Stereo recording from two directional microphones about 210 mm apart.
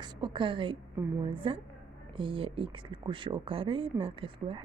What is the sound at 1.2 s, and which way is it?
Speech, 25° right (ahead or behind).